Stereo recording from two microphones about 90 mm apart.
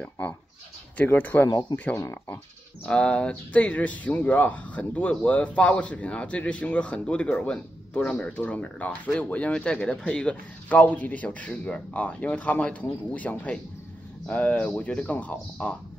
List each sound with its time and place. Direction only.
0.9 s speech: 20° left (ahead or behind)
1.7 s speech: 45° left (ahead or behind)
2.2 s speech: 20° left (ahead or behind)
2.9 s speech: 10° left (ahead or behind)